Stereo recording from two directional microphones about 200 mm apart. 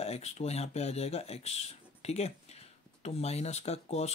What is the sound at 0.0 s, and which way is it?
Speech, 30° left (ahead or behind).